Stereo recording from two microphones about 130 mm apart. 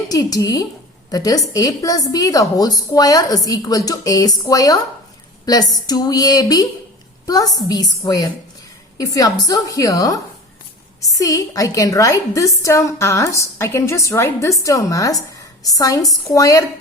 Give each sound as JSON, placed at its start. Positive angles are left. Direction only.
{"t": 0.1, "sound": "a woman's voice", "side_deg": 30}